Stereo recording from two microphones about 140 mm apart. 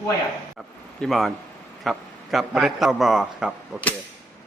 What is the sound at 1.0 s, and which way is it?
A man's voice, centre (ahead or behind).